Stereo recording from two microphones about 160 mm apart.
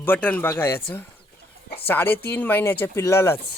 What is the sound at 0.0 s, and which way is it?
Speech, 10° left (ahead or behind).